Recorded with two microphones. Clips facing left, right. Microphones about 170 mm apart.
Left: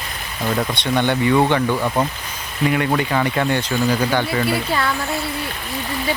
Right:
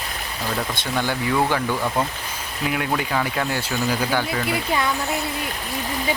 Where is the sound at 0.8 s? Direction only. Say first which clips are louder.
Left 6 dB; 5° right (ahead or behind).